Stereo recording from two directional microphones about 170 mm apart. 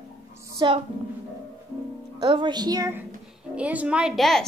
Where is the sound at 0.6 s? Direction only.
25° right (ahead or behind).